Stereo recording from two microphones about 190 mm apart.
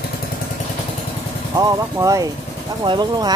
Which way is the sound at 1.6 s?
20° right (ahead or behind).